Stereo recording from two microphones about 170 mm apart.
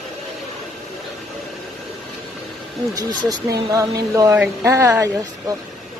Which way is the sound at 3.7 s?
20° right (ahead or behind).